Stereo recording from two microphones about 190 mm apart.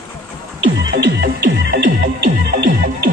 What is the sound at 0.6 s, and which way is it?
Music, 80° right.